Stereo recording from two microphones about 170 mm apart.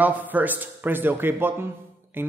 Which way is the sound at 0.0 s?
10° right (ahead or behind).